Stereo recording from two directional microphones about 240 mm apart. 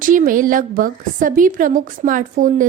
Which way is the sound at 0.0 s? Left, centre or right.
Right.